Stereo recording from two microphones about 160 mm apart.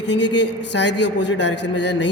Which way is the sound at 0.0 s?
90° left.